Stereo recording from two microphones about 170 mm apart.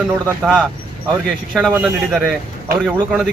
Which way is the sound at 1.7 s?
5° right (ahead or behind).